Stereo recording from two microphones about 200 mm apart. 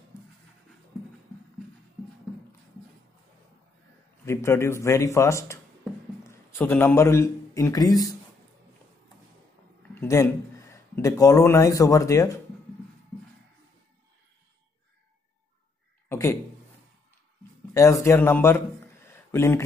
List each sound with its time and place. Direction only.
4.3 s a man's voice: 15° left (ahead or behind)
6.6 s a man's voice: 10° left (ahead or behind)
9.9 s speech: 15° left (ahead or behind)
16.1 s a sound: 10° left (ahead or behind)
17.7 s a man's voice: 15° left (ahead or behind)
19.0 s a sound: 15° left (ahead or behind)